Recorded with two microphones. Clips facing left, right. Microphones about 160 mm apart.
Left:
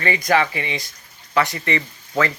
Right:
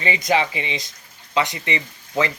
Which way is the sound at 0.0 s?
20° right (ahead or behind).